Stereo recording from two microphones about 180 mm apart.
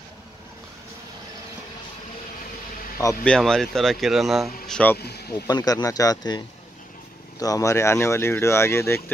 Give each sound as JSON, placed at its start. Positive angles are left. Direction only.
{"t": 3.3, "sound": "speech", "side_deg": 5}
{"t": 4.9, "sound": "speech", "side_deg": 65}
{"t": 5.3, "sound": "speech", "side_deg": 20}